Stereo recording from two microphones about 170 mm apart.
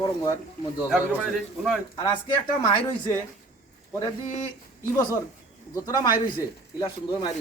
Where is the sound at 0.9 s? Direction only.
Centre (ahead or behind).